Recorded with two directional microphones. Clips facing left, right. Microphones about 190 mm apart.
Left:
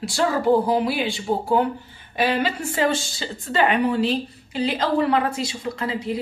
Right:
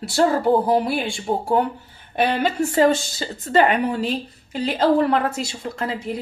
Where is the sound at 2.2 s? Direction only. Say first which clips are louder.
Right 2 dB; 45° right (ahead or behind).